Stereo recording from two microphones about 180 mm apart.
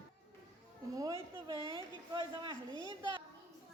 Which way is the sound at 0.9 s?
20° right (ahead or behind).